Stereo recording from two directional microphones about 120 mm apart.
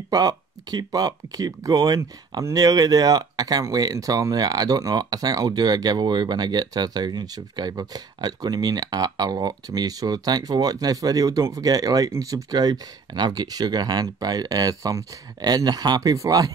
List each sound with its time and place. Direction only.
0.1 s speech: 30° right (ahead or behind)